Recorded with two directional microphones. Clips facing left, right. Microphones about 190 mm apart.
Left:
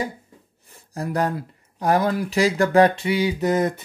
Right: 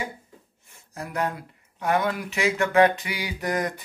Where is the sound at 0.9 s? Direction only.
35° left (ahead or behind).